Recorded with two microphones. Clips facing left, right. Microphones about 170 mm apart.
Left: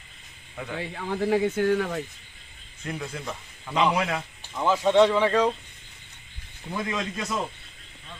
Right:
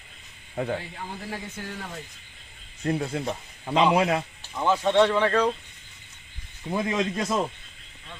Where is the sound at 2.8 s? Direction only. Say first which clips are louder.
Right 7 dB; 35° right (ahead or behind).